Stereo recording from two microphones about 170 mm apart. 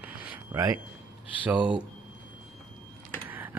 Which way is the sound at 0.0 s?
10° right (ahead or behind).